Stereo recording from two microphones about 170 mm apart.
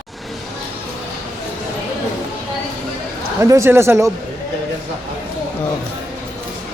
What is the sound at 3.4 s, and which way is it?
Speech, 15° right (ahead or behind).